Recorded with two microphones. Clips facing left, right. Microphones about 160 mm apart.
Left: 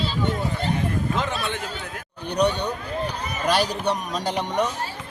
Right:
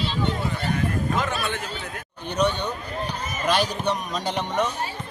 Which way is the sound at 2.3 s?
15° left (ahead or behind).